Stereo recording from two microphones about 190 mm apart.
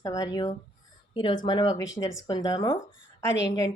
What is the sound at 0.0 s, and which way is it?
A woman's voice, 15° left (ahead or behind).